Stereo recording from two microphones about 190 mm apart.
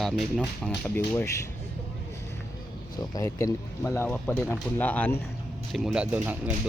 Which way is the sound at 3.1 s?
15° left (ahead or behind).